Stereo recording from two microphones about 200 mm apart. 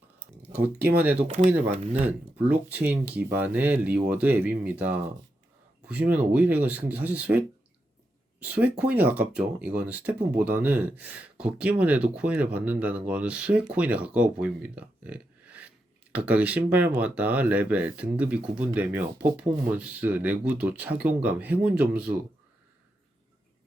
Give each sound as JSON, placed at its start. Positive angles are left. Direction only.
{"t": 0.9, "sound": "speech", "side_deg": -10}